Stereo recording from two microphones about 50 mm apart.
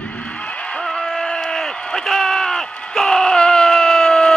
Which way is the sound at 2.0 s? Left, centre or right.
Centre.